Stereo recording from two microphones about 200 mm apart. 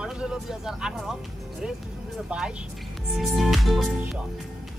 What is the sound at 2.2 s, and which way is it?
Speech, 5° right (ahead or behind).